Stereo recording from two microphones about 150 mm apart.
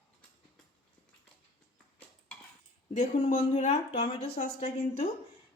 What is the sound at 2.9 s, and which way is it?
Speech, 45° left (ahead or behind).